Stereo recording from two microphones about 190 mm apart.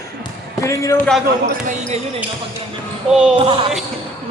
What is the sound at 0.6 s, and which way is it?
Speech, 15° left (ahead or behind).